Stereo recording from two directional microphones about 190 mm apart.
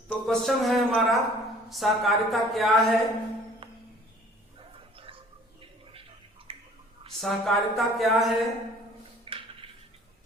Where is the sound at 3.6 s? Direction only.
30° right (ahead or behind).